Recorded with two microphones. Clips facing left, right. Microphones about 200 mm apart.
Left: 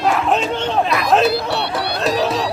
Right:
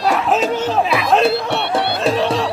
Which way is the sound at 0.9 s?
Centre (ahead or behind).